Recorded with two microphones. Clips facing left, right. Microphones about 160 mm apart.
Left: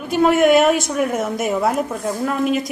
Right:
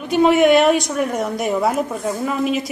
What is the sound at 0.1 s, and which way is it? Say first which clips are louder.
A woman's voice: right 1 dB; centre (ahead or behind).